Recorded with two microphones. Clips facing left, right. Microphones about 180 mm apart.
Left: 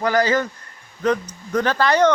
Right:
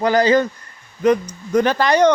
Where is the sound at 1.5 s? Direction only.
15° right (ahead or behind).